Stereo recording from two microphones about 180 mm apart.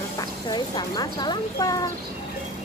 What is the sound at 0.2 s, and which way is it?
Speech, 20° left (ahead or behind).